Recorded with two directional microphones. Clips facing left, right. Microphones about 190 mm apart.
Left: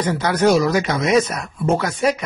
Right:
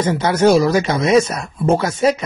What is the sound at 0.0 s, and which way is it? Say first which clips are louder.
Speech: right 3 dB; 25° right (ahead or behind).